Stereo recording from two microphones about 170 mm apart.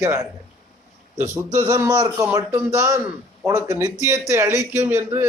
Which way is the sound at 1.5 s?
15° right (ahead or behind).